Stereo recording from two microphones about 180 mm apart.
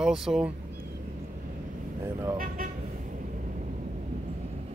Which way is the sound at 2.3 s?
50° right (ahead or behind).